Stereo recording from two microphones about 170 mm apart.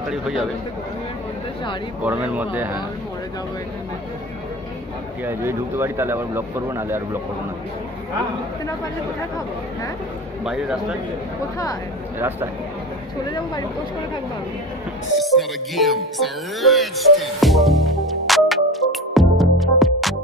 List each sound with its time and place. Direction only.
0.1 s a man's voice: centre (ahead or behind)
2.0 s speech: 10° right (ahead or behind)
5.2 s speech: 15° right (ahead or behind)
10.4 s a man's voice: 5° right (ahead or behind)
12.2 s speech: 10° right (ahead or behind)
15.1 s music: centre (ahead or behind)